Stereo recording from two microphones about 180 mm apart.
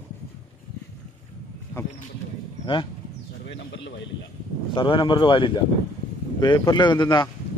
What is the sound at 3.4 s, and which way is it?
Bird, 80° left.